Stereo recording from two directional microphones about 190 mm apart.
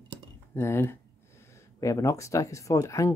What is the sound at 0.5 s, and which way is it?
Speech, 15° left (ahead or behind).